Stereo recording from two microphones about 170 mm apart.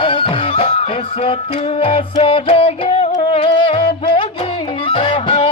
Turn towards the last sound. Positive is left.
turn(degrees=30)  # may be behind; listen again after turning